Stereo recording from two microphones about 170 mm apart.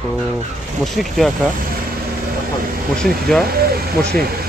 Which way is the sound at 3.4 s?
65° right (ahead or behind).